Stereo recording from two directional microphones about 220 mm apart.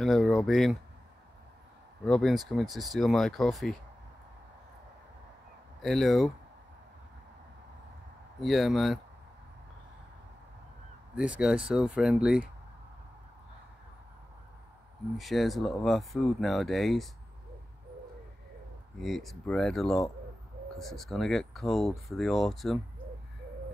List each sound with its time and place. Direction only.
0.0 s speech: centre (ahead or behind)
2.0 s speech: centre (ahead or behind)
5.8 s speech: centre (ahead or behind)
8.4 s speech: centre (ahead or behind)
11.1 s speech: 5° right (ahead or behind)
15.1 s speech: centre (ahead or behind)
18.9 s speech: centre (ahead or behind)